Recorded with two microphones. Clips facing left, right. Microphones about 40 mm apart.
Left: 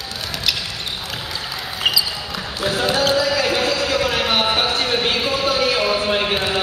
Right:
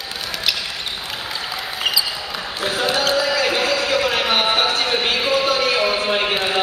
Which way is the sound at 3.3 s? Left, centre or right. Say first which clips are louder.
Even; centre.